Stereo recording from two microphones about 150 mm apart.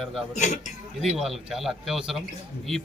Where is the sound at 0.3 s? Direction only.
50° left (ahead or behind).